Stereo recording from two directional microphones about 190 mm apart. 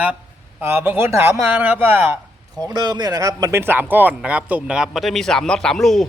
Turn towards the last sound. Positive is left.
turn(degrees=0)  # may be behind; listen again after turning